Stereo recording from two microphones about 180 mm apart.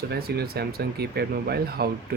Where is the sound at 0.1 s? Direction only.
60° right (ahead or behind).